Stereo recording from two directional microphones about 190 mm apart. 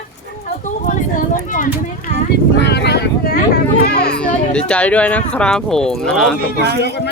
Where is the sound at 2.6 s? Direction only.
60° left (ahead or behind).